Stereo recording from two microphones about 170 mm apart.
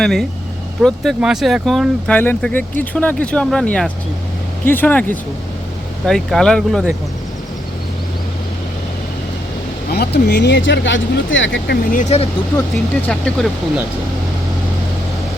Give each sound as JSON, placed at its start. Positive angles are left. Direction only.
{"t": 0.0, "sound": "speech", "side_deg": 5}
{"t": 9.9, "sound": "speech", "side_deg": 70}
{"t": 11.9, "sound": "speech", "side_deg": 45}
{"t": 13.1, "sound": "speech", "side_deg": 5}